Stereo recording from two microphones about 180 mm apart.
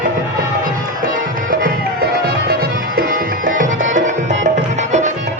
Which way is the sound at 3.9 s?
45° right (ahead or behind).